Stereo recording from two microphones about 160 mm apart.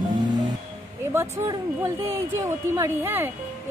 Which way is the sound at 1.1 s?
15° right (ahead or behind).